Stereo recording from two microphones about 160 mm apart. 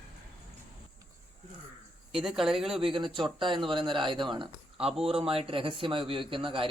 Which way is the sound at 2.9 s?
30° right (ahead or behind).